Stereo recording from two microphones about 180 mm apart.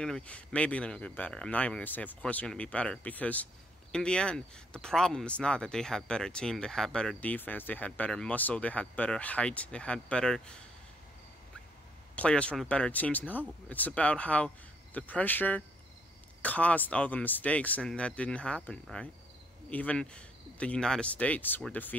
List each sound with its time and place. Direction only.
0.0 s speech: 5° left (ahead or behind)
12.2 s speech: 5° left (ahead or behind)